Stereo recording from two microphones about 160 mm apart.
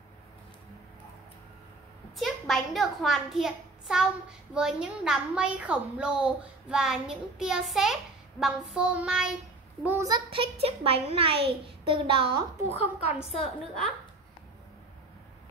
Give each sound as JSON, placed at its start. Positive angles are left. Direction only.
{"t": 2.1, "sound": "a child's voice", "side_deg": 0}
{"t": 9.8, "sound": "a child's voice", "side_deg": -20}
{"t": 12.7, "sound": "a woman's voice", "side_deg": 40}